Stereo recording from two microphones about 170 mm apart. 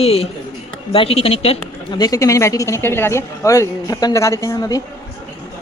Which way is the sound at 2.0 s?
20° left (ahead or behind).